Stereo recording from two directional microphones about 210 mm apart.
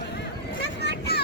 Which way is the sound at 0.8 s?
50° left (ahead or behind).